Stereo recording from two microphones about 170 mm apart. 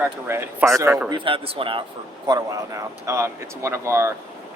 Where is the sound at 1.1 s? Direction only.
30° right (ahead or behind).